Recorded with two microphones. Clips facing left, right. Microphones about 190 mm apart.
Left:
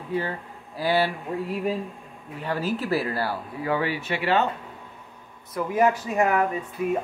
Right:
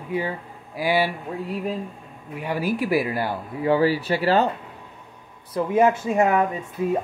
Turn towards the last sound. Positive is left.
turn(degrees=-25)  # may be behind; listen again after turning